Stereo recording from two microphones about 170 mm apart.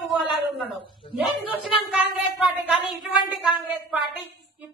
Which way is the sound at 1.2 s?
5° right (ahead or behind).